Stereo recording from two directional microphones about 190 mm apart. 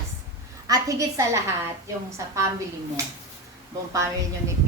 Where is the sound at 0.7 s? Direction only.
15° right (ahead or behind).